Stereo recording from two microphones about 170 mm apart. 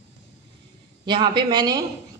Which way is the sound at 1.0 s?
25° right (ahead or behind).